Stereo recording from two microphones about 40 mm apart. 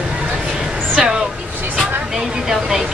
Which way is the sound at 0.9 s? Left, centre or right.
Centre.